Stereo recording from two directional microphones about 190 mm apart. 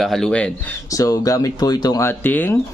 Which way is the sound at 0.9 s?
15° left (ahead or behind).